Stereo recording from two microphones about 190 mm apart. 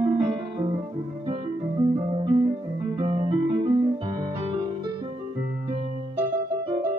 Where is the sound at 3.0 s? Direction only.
25° right (ahead or behind).